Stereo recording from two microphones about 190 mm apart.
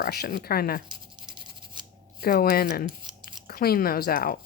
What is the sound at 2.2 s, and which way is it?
Speech, 50° left (ahead or behind).